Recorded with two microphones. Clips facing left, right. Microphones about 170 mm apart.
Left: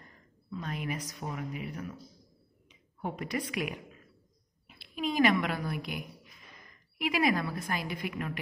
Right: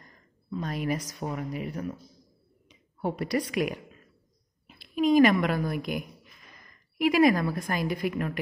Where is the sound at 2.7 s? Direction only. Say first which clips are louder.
Right 6 dB; 35° right (ahead or behind).